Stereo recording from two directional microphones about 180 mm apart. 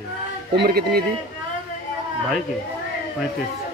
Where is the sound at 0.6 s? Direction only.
60° right (ahead or behind).